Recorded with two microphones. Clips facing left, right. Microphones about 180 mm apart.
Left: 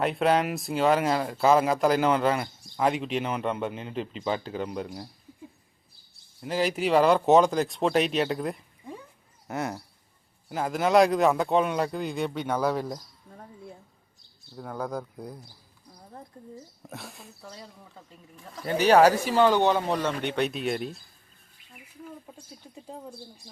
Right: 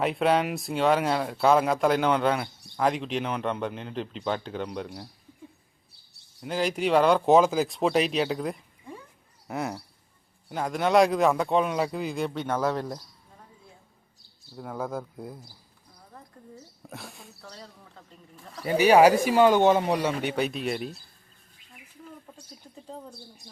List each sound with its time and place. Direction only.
0.0 s speech: centre (ahead or behind)
6.4 s speech: centre (ahead or behind)
14.5 s speech: centre (ahead or behind)
16.8 s speech: centre (ahead or behind)
18.6 s speech: 10° right (ahead or behind)
22.3 s bird: 10° left (ahead or behind)
23.4 s speech: 70° right (ahead or behind)